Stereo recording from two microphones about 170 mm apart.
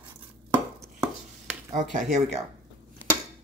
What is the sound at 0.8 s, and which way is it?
Chopping, 5° right (ahead or behind).